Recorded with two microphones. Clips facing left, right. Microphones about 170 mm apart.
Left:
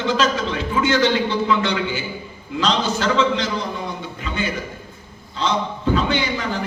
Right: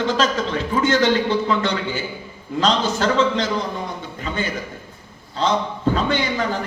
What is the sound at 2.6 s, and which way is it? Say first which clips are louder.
Speech: right 1 dB; 45° right (ahead or behind).